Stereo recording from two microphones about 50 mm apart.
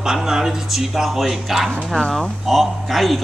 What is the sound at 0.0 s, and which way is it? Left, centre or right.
Speech, centre.